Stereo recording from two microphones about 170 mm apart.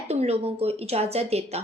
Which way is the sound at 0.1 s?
35° right (ahead or behind).